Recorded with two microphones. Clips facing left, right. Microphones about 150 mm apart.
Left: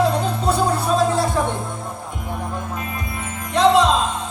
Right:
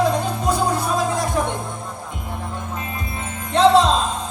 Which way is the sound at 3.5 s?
35° right (ahead or behind).